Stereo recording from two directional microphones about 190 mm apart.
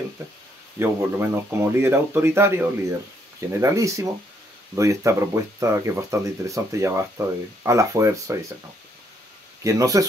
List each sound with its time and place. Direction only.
0.2 s speech: 15° right (ahead or behind)
9.6 s speech: 15° right (ahead or behind)